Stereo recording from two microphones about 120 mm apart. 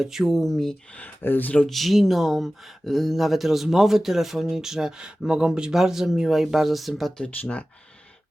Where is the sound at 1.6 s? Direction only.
Centre (ahead or behind).